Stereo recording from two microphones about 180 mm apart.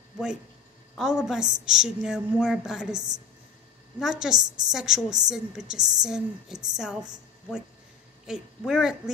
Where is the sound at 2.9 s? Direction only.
20° right (ahead or behind).